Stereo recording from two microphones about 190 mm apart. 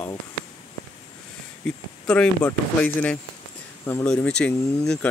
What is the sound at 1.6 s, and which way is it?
Speech, 5° left (ahead or behind).